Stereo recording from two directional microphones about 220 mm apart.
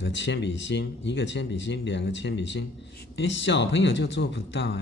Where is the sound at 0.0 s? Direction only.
55° left (ahead or behind).